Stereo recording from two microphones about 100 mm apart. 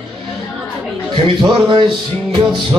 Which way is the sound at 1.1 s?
55° right (ahead or behind).